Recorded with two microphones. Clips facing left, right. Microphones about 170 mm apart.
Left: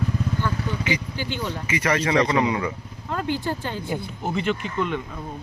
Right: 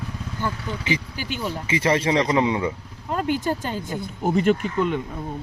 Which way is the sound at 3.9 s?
15° left (ahead or behind).